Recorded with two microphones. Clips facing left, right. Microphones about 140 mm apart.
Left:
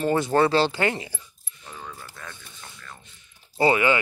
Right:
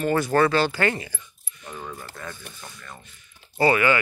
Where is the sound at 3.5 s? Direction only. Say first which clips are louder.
Even; 20° left (ahead or behind).